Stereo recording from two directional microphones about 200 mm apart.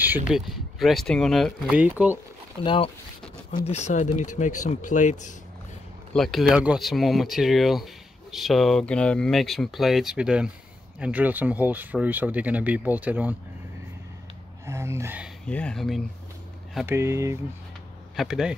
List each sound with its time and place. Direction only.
0.0 s speech: 5° right (ahead or behind)
2.6 s speech: 25° left (ahead or behind)
6.1 s speech: centre (ahead or behind)
14.7 s a sound: 15° right (ahead or behind)
15.4 s speech: 5° left (ahead or behind)
16.7 s speech: 10° right (ahead or behind)
18.1 s speech: centre (ahead or behind)